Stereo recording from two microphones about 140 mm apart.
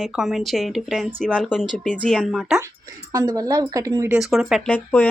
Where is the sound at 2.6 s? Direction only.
25° right (ahead or behind).